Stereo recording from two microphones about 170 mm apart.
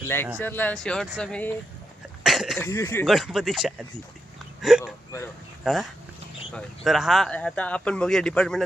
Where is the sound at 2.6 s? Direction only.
15° left (ahead or behind).